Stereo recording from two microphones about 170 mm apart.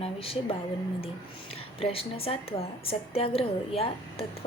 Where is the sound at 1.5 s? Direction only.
35° left (ahead or behind).